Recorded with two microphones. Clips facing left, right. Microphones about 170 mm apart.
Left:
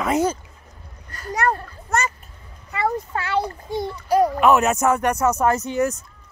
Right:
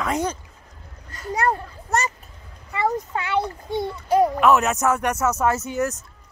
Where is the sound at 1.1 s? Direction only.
25° right (ahead or behind).